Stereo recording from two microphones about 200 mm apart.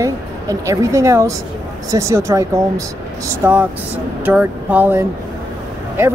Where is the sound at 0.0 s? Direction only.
15° right (ahead or behind).